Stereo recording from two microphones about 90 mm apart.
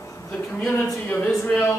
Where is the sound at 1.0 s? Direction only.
20° left (ahead or behind).